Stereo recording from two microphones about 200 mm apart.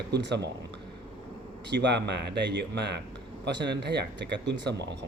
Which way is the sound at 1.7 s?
60° right (ahead or behind).